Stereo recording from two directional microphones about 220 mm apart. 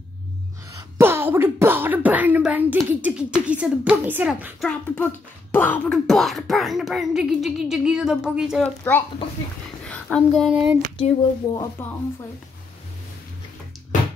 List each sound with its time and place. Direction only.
0.7 s speech: 10° right (ahead or behind)
4.6 s a child's voice: 10° left (ahead or behind)
8.6 s a woman's voice: 10° left (ahead or behind)
11.0 s speech: 25° left (ahead or behind)